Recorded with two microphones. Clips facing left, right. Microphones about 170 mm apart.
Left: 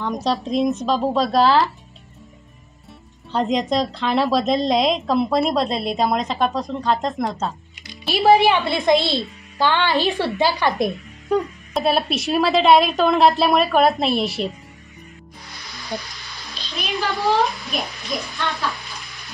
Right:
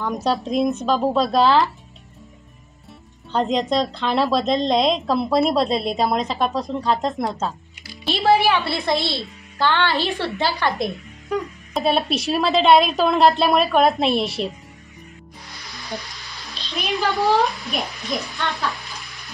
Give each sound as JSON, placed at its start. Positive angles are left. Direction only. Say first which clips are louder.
{"t": 0.0, "sound": "speech", "louder": "even", "side_deg": -5}
{"t": 3.3, "sound": "speech", "louder": "even", "side_deg": 0}
{"t": 8.1, "sound": "a woman's voice", "louder": "left 2 dB", "side_deg": 15}
{"t": 11.7, "sound": "speech", "louder": "even", "side_deg": 0}
{"t": 16.2, "sound": "a sound", "louder": "even", "side_deg": 0}
{"t": 18.5, "sound": "bathtub", "louder": "even", "side_deg": 0}